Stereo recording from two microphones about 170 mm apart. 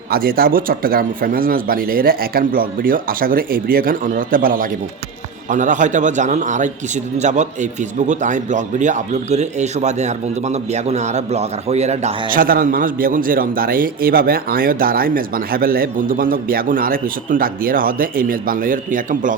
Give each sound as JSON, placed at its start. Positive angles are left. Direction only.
{"t": 0.1, "sound": "a man's voice", "side_deg": -60}
{"t": 12.3, "sound": "a man's voice", "side_deg": -55}